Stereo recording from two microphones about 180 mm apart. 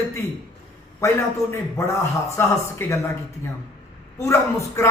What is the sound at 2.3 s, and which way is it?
Speech, 15° left (ahead or behind).